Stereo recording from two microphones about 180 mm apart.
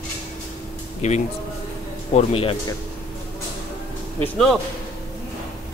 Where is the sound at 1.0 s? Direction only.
40° left (ahead or behind).